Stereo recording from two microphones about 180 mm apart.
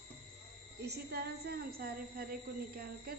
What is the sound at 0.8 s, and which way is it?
A woman's voice, 65° right (ahead or behind).